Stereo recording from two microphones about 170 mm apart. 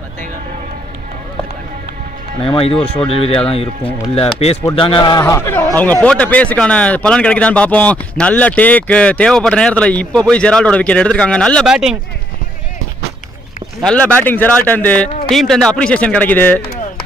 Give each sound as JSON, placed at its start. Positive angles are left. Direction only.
{"t": 2.4, "sound": "speech", "side_deg": 35}
{"t": 13.8, "sound": "speech", "side_deg": 5}